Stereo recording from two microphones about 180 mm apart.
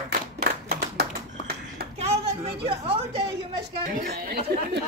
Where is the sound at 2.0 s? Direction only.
35° right (ahead or behind).